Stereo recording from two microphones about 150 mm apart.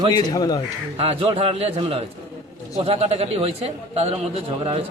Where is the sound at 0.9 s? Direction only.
40° right (ahead or behind).